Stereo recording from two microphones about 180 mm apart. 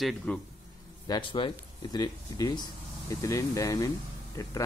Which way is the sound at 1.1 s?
25° left (ahead or behind).